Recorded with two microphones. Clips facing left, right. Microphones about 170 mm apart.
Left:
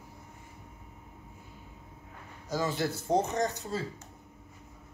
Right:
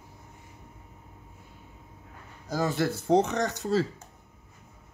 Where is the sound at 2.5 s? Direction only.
50° right (ahead or behind).